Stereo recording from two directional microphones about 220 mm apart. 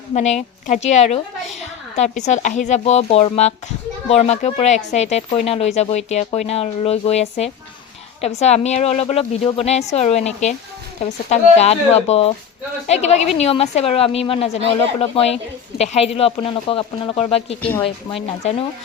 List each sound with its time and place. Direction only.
0.1 s a woman's voice: 30° left (ahead or behind)
17.6 s a woman's voice: 10° left (ahead or behind)
17.8 s speech: 25° left (ahead or behind)